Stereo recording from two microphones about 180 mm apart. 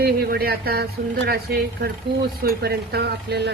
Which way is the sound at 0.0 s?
55° right (ahead or behind).